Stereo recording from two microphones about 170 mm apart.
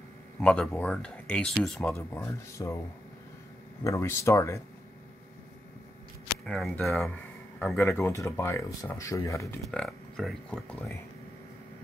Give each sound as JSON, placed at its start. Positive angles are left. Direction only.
{"t": 0.4, "sound": "speech", "side_deg": 5}
{"t": 2.0, "sound": "speech", "side_deg": 15}
{"t": 3.8, "sound": "speech", "side_deg": 15}
{"t": 6.4, "sound": "speech", "side_deg": 5}
{"t": 7.7, "sound": "speech", "side_deg": 15}
{"t": 9.7, "sound": "speech", "side_deg": 5}